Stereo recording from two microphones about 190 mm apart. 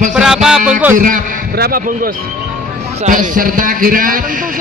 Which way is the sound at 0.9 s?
45° right (ahead or behind).